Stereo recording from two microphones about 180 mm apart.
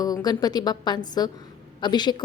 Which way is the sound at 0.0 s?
20° left (ahead or behind).